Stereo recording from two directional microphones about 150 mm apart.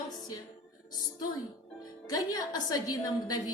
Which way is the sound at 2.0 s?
25° left (ahead or behind).